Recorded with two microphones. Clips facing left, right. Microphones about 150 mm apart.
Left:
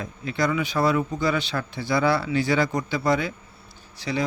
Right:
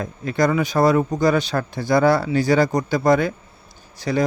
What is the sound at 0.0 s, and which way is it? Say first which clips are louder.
A man's voice: right 6 dB; 45° right (ahead or behind).